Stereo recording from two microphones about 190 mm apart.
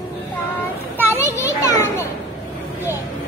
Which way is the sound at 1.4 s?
15° left (ahead or behind).